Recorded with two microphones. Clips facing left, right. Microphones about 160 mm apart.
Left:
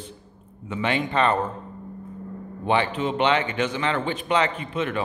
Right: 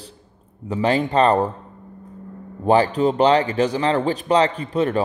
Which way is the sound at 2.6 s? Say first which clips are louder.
Right 7 dB; 40° right (ahead or behind).